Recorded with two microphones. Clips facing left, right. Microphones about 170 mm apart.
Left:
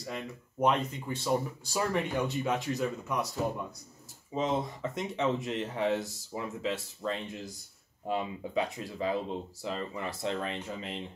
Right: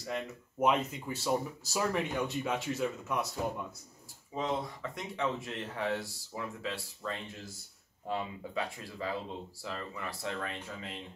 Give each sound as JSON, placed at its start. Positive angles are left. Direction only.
{"t": 0.1, "sound": "speech", "side_deg": -5}
{"t": 4.3, "sound": "speech", "side_deg": 20}